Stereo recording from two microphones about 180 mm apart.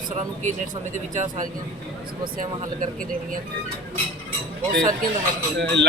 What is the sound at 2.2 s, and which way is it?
Speech, 50° right (ahead or behind).